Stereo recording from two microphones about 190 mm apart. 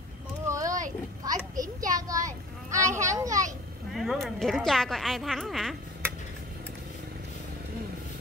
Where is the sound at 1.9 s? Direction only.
20° right (ahead or behind).